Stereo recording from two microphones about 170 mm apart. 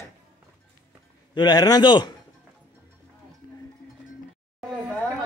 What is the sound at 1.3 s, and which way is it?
Speech, 25° left (ahead or behind).